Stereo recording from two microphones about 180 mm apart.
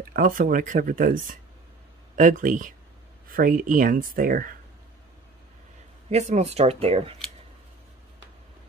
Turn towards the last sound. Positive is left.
turn(degrees=-35)  # may be behind; listen again after turning